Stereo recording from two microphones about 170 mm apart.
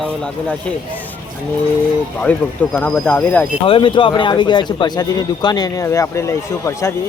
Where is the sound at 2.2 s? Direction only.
10° left (ahead or behind).